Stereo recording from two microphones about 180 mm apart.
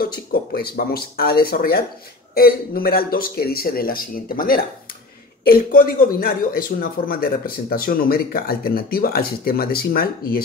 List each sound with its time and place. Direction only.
0.0 s speech: 55° left (ahead or behind)